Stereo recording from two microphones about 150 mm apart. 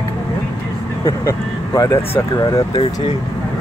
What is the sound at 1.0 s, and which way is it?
Speech, 20° left (ahead or behind).